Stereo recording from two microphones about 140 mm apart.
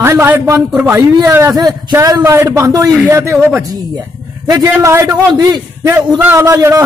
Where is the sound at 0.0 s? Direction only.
15° right (ahead or behind).